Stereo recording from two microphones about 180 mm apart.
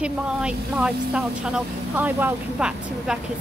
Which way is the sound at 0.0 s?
5° right (ahead or behind).